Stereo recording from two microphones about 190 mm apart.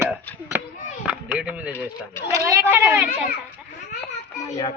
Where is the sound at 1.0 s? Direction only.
5° right (ahead or behind).